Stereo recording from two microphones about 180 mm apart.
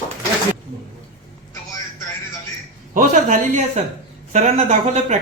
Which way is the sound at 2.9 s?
40° right (ahead or behind).